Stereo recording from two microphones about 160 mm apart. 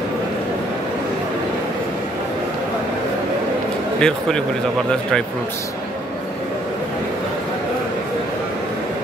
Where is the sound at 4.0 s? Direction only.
5° left (ahead or behind).